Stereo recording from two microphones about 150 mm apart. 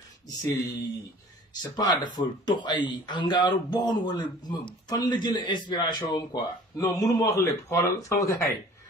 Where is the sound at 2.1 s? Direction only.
30° left (ahead or behind).